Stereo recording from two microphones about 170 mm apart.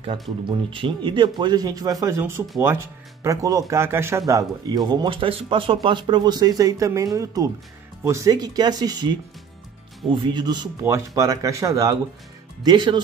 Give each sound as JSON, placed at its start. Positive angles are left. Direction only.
{"t": 0.5, "sound": "speech", "side_deg": -30}